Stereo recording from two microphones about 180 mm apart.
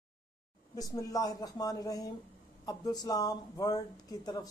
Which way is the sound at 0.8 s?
20° left (ahead or behind).